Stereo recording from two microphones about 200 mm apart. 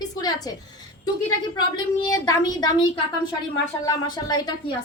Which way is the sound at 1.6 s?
20° left (ahead or behind).